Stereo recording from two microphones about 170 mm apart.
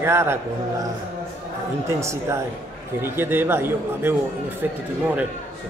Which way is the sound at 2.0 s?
15° right (ahead or behind).